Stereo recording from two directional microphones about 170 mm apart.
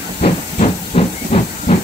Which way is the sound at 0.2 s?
35° left (ahead or behind).